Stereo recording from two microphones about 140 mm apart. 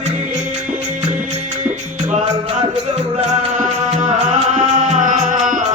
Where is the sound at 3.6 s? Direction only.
60° right (ahead or behind).